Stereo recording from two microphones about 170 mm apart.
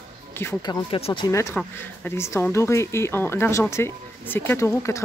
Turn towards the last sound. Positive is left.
turn(degrees=15)  # may be behind; listen again after turning